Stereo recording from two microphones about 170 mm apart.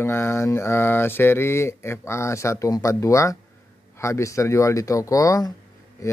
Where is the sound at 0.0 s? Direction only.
15° left (ahead or behind).